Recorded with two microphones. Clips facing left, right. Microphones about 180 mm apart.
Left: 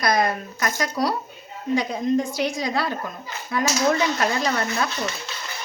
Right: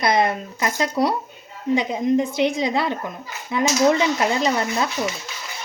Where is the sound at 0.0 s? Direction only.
25° right (ahead or behind).